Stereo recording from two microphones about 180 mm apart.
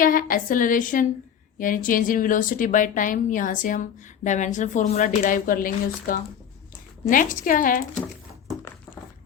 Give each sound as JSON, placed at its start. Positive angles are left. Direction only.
{"t": 0.0, "sound": "a woman's voice", "side_deg": 50}